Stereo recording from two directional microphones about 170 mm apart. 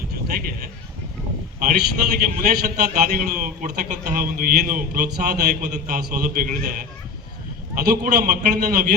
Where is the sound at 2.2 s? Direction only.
60° right (ahead or behind).